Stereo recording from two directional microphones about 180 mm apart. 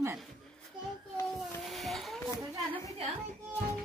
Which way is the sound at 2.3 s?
15° left (ahead or behind).